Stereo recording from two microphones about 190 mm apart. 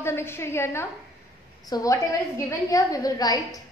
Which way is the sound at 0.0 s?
15° left (ahead or behind).